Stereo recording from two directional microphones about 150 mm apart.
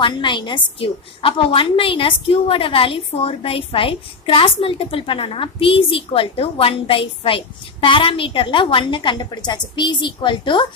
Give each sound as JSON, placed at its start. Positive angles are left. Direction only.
{"t": 0.0, "sound": "a woman's voice", "side_deg": 30}